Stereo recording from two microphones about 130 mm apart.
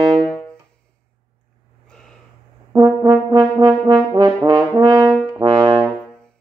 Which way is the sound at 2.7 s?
30° right (ahead or behind).